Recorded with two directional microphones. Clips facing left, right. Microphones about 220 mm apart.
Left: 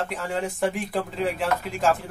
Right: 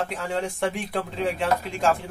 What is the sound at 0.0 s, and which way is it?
Speech, centre (ahead or behind).